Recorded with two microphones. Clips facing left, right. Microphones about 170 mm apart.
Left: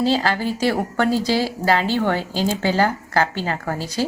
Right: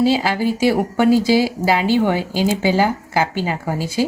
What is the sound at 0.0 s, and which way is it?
Speech, 10° right (ahead or behind).